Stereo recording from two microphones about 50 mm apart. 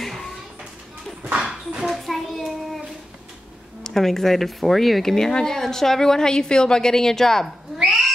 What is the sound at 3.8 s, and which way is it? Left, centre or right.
Speech, centre.